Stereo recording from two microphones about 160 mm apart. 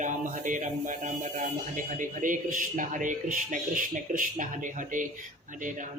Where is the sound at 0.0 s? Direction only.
55° right (ahead or behind).